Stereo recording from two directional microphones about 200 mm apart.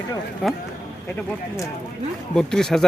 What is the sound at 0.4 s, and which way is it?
Speech, centre (ahead or behind).